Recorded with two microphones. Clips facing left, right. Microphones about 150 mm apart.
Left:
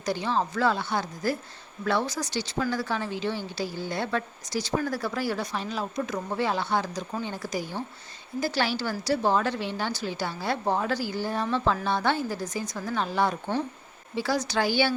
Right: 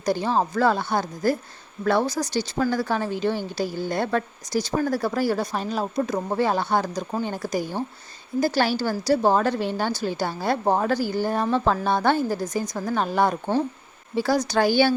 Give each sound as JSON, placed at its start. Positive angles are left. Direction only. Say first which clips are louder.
{"t": 0.0, "sound": "speech", "louder": "right 5 dB", "side_deg": -45}